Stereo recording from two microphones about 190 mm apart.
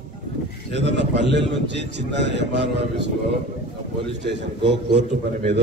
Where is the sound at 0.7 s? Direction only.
70° right (ahead or behind).